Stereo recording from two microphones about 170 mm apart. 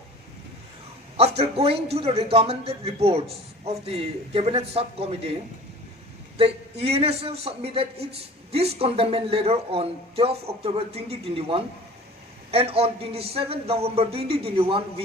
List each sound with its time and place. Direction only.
1.4 s a man's voice: 35° right (ahead or behind)